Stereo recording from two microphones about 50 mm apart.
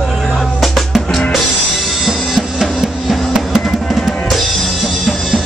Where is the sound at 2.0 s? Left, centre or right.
Centre.